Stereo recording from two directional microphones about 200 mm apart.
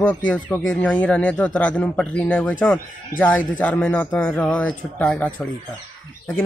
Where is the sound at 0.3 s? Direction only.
5° left (ahead or behind).